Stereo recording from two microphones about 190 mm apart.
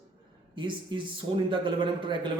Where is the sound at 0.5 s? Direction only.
25° right (ahead or behind).